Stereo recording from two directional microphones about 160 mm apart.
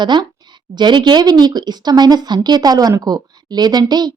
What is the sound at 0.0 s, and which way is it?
Speech, 30° right (ahead or behind).